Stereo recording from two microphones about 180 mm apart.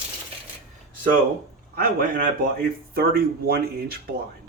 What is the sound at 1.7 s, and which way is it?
A man's voice, 55° right (ahead or behind).